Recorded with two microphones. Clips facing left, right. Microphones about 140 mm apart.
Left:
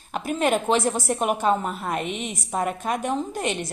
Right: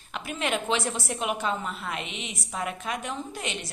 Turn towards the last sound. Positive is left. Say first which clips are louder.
# left 8 dB
turn(degrees=50)  # may be behind; listen again after turning